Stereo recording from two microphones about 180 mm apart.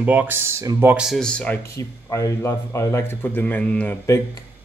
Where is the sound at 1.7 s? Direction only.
15° left (ahead or behind).